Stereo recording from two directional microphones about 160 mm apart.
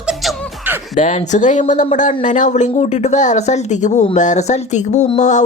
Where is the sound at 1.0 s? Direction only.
45° left (ahead or behind).